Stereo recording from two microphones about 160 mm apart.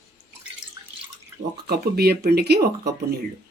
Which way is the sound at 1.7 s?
85° right.